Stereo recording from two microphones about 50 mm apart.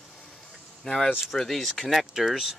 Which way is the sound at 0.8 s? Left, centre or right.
Centre.